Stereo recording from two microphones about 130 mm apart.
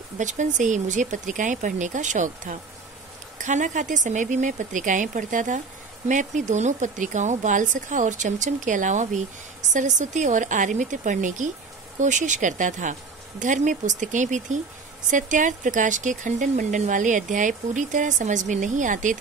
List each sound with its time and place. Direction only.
0.2 s speech: 70° right (ahead or behind)
6.0 s speech: 70° right (ahead or behind)